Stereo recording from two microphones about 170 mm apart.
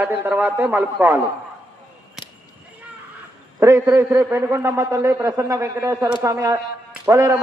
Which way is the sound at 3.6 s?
15° right (ahead or behind).